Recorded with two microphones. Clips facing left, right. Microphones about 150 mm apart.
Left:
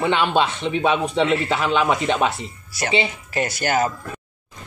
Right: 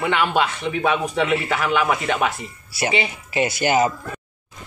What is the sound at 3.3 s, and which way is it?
Speech, 10° right (ahead or behind).